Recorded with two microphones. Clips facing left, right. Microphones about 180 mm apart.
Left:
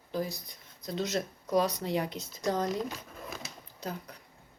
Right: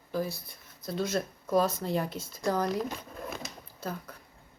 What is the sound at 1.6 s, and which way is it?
Speech, 45° right (ahead or behind).